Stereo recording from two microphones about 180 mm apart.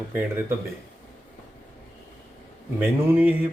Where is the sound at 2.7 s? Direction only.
10° right (ahead or behind).